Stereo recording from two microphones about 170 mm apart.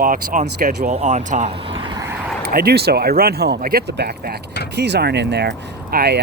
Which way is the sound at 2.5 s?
65° right (ahead or behind).